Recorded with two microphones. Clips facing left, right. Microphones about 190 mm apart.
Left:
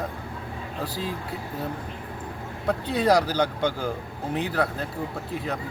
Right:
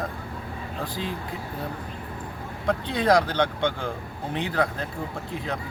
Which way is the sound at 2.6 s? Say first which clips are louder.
Even; 10° left (ahead or behind).